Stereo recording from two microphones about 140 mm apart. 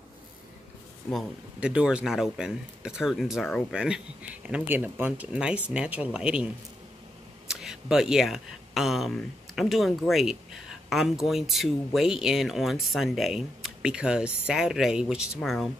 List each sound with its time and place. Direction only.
1.1 s speech: 5° right (ahead or behind)